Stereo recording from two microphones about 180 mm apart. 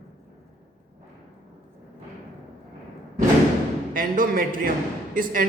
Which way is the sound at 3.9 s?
50° right (ahead or behind).